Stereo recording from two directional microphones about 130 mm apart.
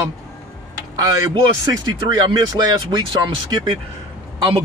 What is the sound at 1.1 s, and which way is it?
Speech, 35° right (ahead or behind).